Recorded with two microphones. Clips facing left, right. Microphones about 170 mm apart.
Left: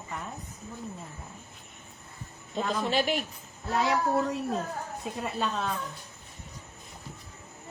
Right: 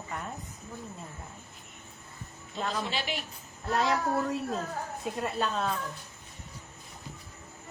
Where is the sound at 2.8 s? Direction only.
50° left (ahead or behind).